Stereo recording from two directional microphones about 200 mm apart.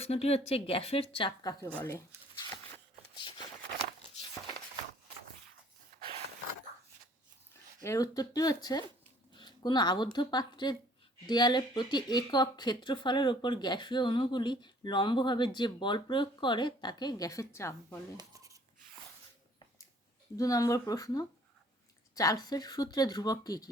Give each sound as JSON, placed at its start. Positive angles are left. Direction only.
{"t": 0.0, "sound": "speech", "side_deg": 30}
{"t": 3.2, "sound": "a sound", "side_deg": 25}
{"t": 7.8, "sound": "speech", "side_deg": 15}
{"t": 18.2, "sound": "coin", "side_deg": -15}
{"t": 20.3, "sound": "speech", "side_deg": 15}